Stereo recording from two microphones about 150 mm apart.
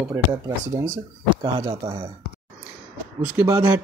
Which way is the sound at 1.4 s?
35° right (ahead or behind).